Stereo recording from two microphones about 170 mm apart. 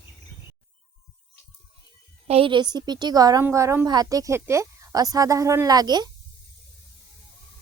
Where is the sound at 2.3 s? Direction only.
30° right (ahead or behind).